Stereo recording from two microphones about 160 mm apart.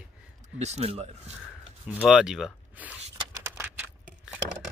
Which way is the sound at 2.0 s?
5° right (ahead or behind).